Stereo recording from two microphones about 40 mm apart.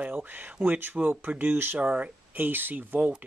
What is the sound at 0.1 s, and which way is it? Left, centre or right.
Speech, right.